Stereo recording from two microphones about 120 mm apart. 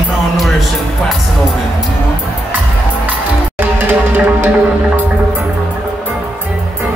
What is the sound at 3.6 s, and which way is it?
Music, 15° right (ahead or behind).